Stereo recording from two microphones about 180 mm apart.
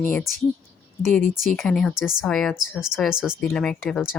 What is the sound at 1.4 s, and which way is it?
Speech, centre (ahead or behind).